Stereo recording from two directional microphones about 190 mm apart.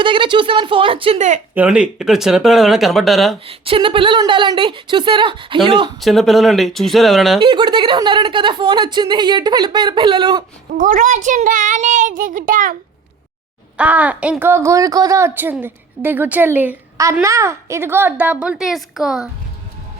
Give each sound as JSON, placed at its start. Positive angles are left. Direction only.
{"t": 0.0, "sound": "a woman's voice", "side_deg": -25}
{"t": 1.5, "sound": "speech", "side_deg": -5}
{"t": 3.4, "sound": "a woman's voice", "side_deg": -30}
{"t": 6.0, "sound": "speech", "side_deg": 0}
{"t": 7.3, "sound": "a woman's voice", "side_deg": -25}
{"t": 10.8, "sound": "a child's voice", "side_deg": -45}
{"t": 13.7, "sound": "speech", "side_deg": -5}